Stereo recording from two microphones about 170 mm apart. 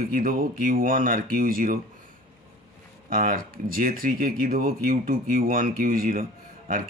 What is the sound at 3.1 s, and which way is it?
Speech, 55° right (ahead or behind).